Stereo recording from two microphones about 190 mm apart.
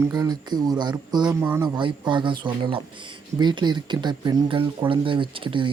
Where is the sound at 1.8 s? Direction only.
25° right (ahead or behind).